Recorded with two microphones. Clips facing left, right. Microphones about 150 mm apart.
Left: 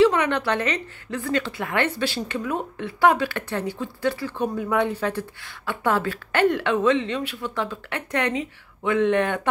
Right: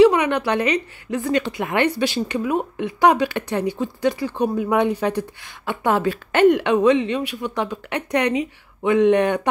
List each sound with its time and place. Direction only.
0.0 s a woman's voice: 10° right (ahead or behind)